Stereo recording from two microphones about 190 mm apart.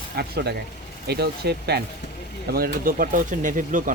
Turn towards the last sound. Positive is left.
turn(degrees=-45)  # may be behind; listen again after turning